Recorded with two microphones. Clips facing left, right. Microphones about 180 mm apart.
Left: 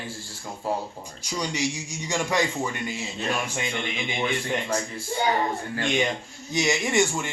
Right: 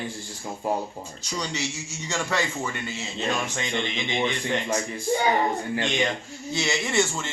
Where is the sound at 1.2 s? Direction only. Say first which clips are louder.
Left 3 dB; 10° left (ahead or behind).